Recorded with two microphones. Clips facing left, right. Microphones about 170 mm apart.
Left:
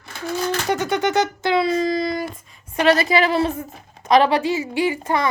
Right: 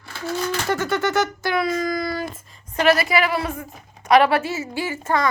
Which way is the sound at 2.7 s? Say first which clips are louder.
Left 1 dB; 20° left (ahead or behind).